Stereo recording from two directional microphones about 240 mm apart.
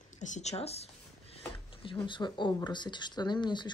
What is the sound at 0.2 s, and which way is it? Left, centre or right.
Speech, left.